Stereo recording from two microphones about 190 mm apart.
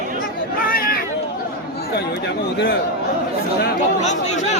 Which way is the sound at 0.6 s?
50° left (ahead or behind).